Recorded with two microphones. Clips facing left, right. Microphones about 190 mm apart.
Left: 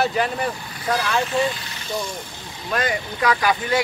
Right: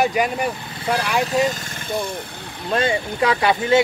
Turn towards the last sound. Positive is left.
turn(degrees=-25)  # may be behind; listen again after turning